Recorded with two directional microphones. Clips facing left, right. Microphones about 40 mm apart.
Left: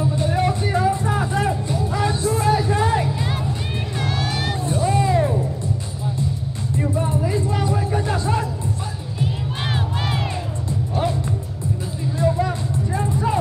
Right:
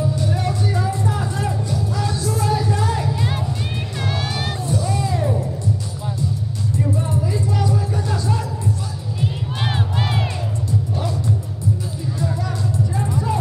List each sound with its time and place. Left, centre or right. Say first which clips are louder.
0.2 s music: left 2 dB; left
4.0 s music: even; centre
4.6 s music: left 4 dB; left
6.8 s a sound: left 1 dB; left
9.2 s crowd: right 1 dB; centre
12.4 s music: left 1 dB; left